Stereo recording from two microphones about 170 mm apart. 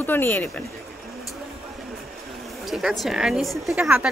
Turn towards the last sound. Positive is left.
turn(degrees=-10)  # may be behind; listen again after turning